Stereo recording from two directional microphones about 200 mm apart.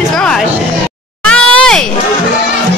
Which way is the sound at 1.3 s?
5° left (ahead or behind).